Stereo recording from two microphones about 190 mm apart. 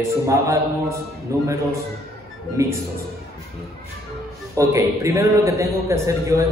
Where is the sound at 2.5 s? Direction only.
Centre (ahead or behind).